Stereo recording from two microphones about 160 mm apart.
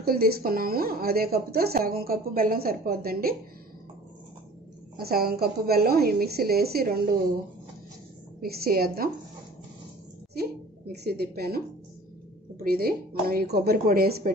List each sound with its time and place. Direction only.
0.0 s speech: 70° right (ahead or behind)
4.9 s speech: 70° right (ahead or behind)
8.4 s speech: 75° right (ahead or behind)
10.9 s a woman's voice: 80° right